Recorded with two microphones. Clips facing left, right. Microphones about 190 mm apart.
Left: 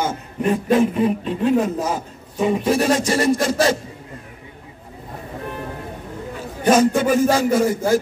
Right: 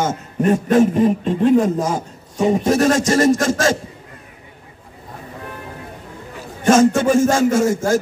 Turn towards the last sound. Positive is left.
turn(degrees=-45)  # may be behind; listen again after turning